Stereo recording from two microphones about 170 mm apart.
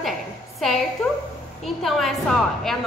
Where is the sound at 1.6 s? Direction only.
Centre (ahead or behind).